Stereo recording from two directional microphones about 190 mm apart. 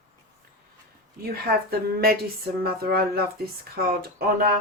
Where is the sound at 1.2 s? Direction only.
55° right (ahead or behind).